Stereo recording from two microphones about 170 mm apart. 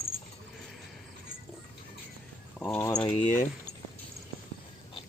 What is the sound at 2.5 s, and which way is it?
Speech, 15° left (ahead or behind).